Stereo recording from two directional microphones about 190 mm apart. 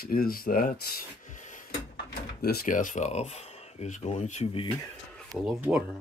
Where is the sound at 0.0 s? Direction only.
50° left (ahead or behind); by 4.6 s 30° left (ahead or behind).